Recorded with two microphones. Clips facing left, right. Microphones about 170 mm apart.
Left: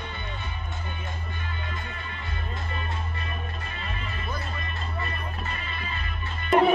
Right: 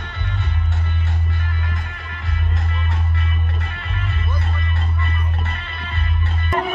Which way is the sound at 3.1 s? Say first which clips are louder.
Right 6 dB; 65° right (ahead or behind).